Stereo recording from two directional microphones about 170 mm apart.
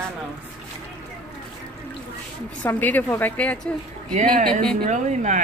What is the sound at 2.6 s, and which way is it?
A woman's voice, 10° left (ahead or behind).